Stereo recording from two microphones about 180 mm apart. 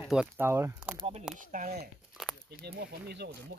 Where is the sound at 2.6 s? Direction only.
65° right (ahead or behind).